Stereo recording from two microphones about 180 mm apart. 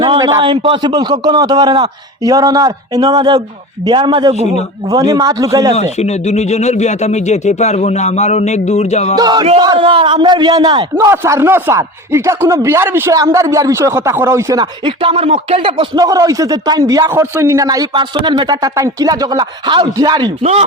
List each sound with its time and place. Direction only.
0.0 s a man's voice: 25° right (ahead or behind)
5.7 s speech: 35° left (ahead or behind)
9.1 s a man's voice: 25° right (ahead or behind)
20.4 s speech: 35° right (ahead or behind)